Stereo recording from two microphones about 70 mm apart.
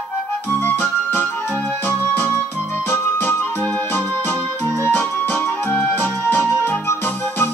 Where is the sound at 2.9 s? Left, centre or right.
Left.